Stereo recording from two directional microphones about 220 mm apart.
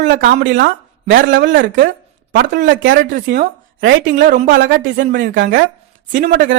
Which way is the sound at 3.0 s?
45° right (ahead or behind).